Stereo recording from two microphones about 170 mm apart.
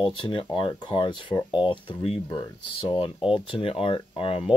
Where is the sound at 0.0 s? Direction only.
30° left (ahead or behind).